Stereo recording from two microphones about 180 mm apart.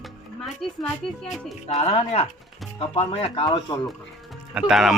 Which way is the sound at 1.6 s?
35° left (ahead or behind).